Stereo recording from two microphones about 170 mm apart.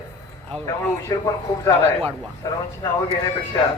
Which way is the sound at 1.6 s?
10° left (ahead or behind).